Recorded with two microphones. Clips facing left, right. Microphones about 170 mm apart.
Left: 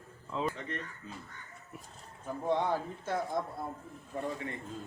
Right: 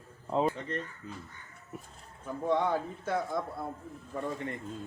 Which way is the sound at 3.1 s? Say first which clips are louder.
Right 1 dB; 60° right (ahead or behind).